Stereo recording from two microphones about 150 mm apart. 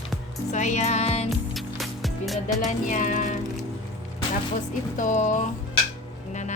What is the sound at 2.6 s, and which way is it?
Music, 55° left (ahead or behind).